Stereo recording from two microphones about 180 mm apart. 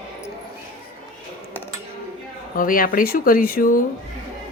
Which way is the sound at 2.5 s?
50° left (ahead or behind).